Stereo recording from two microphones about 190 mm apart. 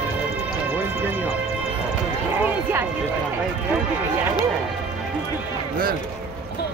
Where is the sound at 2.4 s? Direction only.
10° right (ahead or behind).